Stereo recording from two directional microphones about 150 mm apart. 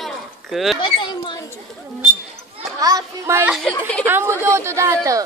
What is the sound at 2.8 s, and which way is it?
Speech, 20° right (ahead or behind).